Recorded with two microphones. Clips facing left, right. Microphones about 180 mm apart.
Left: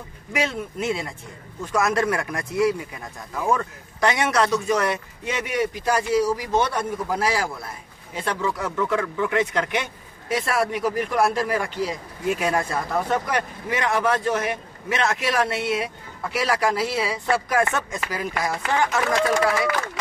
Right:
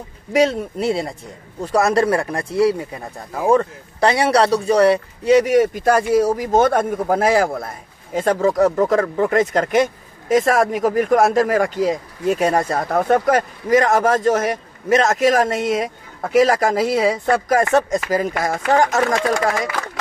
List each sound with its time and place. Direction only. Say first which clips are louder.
0.3 s speech: right 9 dB; 35° right (ahead or behind)
12.8 s speech: right 8 dB; 55° right (ahead or behind)